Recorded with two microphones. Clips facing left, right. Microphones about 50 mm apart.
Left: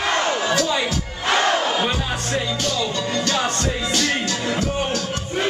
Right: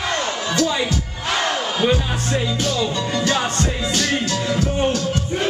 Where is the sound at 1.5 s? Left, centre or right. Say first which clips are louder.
Right 1 dB; centre.